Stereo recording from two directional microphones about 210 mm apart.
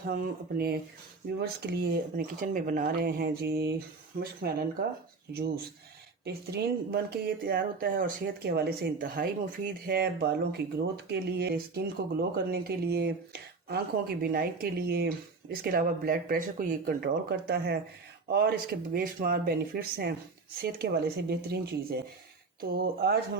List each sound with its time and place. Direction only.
0.1 s speech: 45° right (ahead or behind)
6.2 s speech: 50° right (ahead or behind)